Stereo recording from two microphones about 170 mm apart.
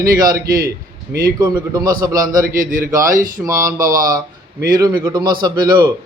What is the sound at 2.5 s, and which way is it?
Speech, 55° right (ahead or behind).